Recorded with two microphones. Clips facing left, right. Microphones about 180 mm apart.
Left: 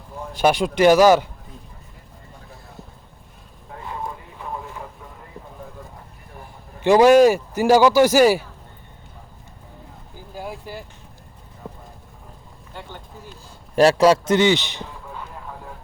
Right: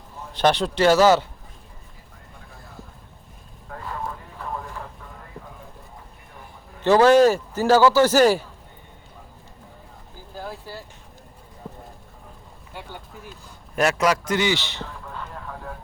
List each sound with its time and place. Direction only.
0.3 s speech: 10° left (ahead or behind)
6.8 s speech: 10° left (ahead or behind)
10.3 s vehicle: 15° left (ahead or behind)
13.7 s a man's voice: 30° left (ahead or behind); by 15.3 s 15° left (ahead or behind)